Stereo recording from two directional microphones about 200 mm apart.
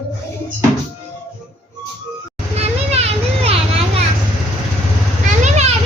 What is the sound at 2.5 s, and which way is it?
Children playing, 30° right (ahead or behind).